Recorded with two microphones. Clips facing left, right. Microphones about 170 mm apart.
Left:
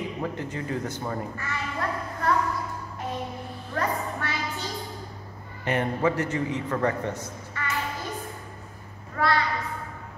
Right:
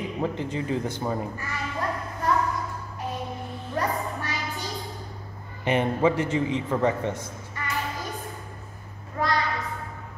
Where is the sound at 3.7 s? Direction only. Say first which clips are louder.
Even; 15° right (ahead or behind).